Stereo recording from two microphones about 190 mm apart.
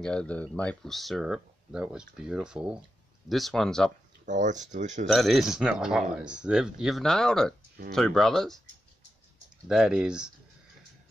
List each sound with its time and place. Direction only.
0.0 s speech: 5° left (ahead or behind)
4.3 s speech: 40° right (ahead or behind)
5.1 s speech: centre (ahead or behind)
9.7 s speech: 5° right (ahead or behind)